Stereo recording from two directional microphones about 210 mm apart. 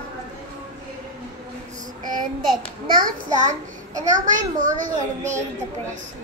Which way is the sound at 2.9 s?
40° right (ahead or behind).